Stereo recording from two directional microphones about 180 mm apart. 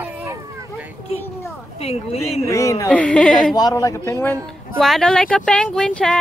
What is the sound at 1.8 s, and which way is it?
Speech, 35° left (ahead or behind).